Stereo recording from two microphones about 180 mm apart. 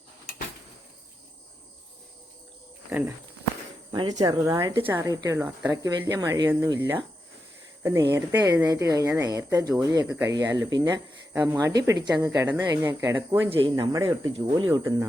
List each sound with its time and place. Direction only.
4.2 s speech: 20° right (ahead or behind)
13.5 s speech: 25° right (ahead or behind)